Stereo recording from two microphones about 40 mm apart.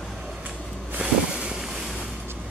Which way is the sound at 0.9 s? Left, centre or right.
Right.